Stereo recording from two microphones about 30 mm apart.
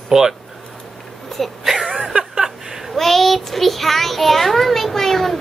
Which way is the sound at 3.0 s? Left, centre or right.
Centre.